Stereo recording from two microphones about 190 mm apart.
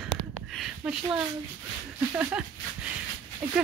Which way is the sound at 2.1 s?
5° right (ahead or behind).